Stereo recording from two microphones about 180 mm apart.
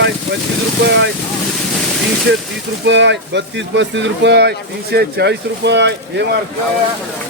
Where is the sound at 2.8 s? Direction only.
80° right.